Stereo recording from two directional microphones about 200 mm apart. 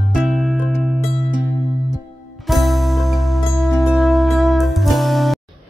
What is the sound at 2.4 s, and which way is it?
Music, centre (ahead or behind).